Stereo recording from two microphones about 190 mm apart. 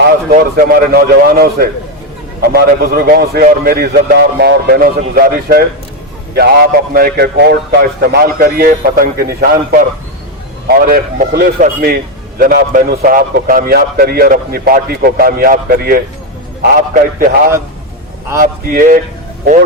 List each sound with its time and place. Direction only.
0.3 s a man's voice: 50° right (ahead or behind)